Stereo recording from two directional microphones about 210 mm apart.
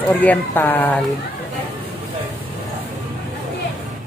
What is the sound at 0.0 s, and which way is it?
Speech, 5° left (ahead or behind).